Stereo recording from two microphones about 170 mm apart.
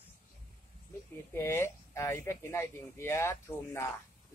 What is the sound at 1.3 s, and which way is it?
Speech, 15° left (ahead or behind).